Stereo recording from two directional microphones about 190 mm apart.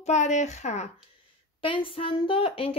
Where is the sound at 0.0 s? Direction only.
40° left (ahead or behind).